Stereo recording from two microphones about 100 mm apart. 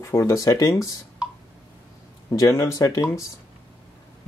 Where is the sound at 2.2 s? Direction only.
35° left (ahead or behind).